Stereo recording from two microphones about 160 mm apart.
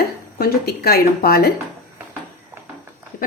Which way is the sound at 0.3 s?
70° left (ahead or behind).